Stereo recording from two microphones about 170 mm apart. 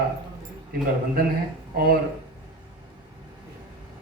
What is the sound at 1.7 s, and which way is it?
Speech, 60° right (ahead or behind).